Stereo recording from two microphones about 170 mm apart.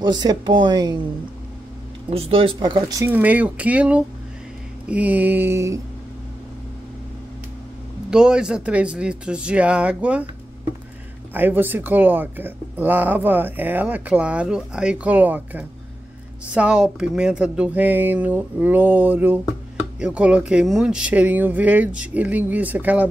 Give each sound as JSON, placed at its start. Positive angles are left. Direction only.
{"t": 0.0, "sound": "speech", "side_deg": -25}
{"t": 2.0, "sound": "speech", "side_deg": -35}
{"t": 3.1, "sound": "speech", "side_deg": -10}
{"t": 8.1, "sound": "speech", "side_deg": -5}
{"t": 11.3, "sound": "speech", "side_deg": -10}